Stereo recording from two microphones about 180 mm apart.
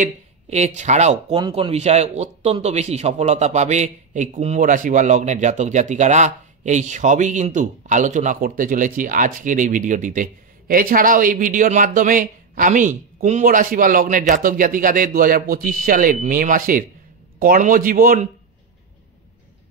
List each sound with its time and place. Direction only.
0.0 s speech: 40° right (ahead or behind)
1.3 s a man's voice: 25° right (ahead or behind); by 18.3 s 50° right (ahead or behind)